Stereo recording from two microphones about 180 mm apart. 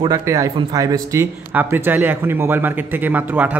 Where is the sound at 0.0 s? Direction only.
20° right (ahead or behind).